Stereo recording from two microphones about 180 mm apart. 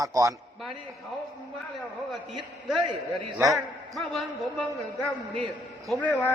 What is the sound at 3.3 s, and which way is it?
A man's voice, centre (ahead or behind).